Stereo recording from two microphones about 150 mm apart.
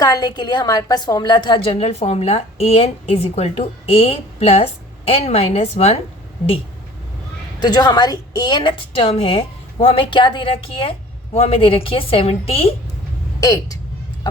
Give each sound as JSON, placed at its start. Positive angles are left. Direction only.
{"t": 0.0, "sound": "a woman's voice", "side_deg": 25}
{"t": 7.6, "sound": "a woman's voice", "side_deg": 30}
{"t": 13.4, "sound": "speech", "side_deg": 25}